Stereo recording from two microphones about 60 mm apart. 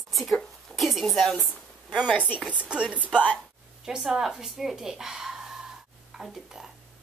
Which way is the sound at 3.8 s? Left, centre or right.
Centre.